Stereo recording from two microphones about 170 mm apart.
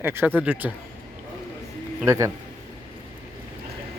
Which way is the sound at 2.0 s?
15° right (ahead or behind).